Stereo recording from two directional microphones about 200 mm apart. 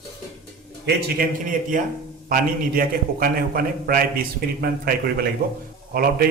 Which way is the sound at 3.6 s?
45° right (ahead or behind).